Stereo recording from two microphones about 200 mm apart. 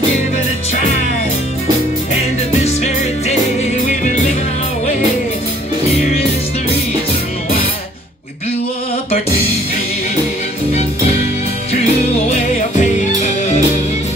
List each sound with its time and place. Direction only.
2.6 s music: 35° left (ahead or behind)
12.3 s music: 40° left (ahead or behind)